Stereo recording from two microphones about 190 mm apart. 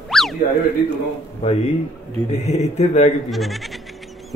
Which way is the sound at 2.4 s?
35° left (ahead or behind).